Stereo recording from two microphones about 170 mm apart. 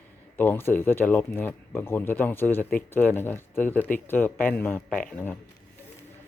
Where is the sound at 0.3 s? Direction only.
10° left (ahead or behind).